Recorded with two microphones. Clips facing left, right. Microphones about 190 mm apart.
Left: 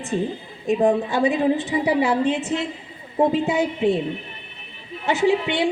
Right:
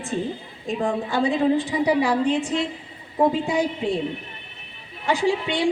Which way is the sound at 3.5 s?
20° left (ahead or behind).